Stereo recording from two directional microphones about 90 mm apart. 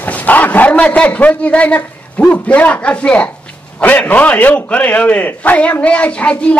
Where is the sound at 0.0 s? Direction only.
20° left (ahead or behind).